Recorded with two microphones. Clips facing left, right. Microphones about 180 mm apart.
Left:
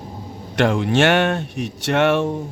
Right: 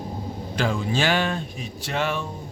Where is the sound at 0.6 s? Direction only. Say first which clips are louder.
Left 7 dB; 70° left (ahead or behind).